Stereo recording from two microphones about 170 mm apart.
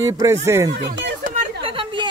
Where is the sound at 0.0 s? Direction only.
20° right (ahead or behind).